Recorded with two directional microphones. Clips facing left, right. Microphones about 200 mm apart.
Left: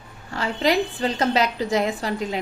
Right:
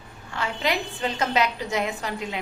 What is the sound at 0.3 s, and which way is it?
A woman's voice, 35° left (ahead or behind).